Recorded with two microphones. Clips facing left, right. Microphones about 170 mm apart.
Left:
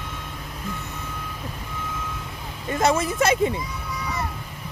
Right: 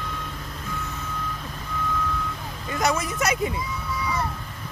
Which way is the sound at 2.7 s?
25° left (ahead or behind).